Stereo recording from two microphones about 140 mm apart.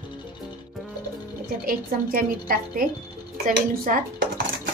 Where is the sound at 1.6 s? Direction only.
90° right.